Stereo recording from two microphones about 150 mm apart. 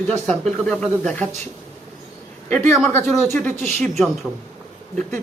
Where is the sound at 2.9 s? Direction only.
15° left (ahead or behind).